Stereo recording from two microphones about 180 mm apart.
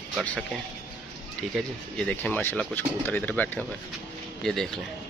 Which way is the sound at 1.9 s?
5° left (ahead or behind).